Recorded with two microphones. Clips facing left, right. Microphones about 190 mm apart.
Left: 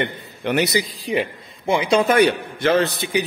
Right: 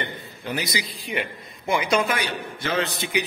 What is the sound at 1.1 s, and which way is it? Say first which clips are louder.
Speech: left 5 dB; 35° left (ahead or behind).